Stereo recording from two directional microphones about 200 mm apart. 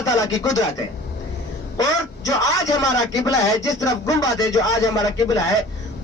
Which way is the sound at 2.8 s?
15° left (ahead or behind).